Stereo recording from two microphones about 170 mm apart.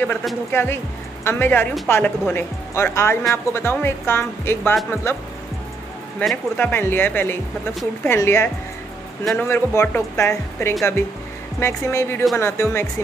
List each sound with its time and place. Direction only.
0.5 s speech: 15° left (ahead or behind)
9.2 s a man's voice: centre (ahead or behind)
9.5 s speech: 15° left (ahead or behind)